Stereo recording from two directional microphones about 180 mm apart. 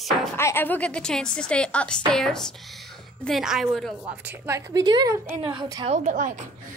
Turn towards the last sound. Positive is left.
turn(degrees=-45)  # may be behind; listen again after turning